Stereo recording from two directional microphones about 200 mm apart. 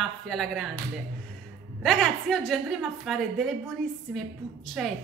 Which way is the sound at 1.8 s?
5° left (ahead or behind).